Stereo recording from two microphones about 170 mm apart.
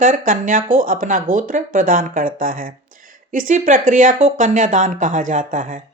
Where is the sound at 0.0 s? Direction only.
50° right (ahead or behind).